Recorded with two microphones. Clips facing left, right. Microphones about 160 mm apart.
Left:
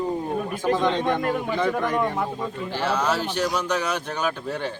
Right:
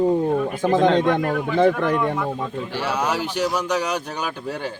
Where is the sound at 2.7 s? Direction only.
10° right (ahead or behind).